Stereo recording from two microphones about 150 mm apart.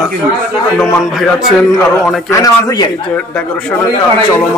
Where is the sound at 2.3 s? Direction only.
25° left (ahead or behind).